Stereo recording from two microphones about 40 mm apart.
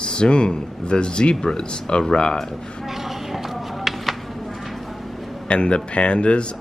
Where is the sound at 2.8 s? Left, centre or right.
Centre.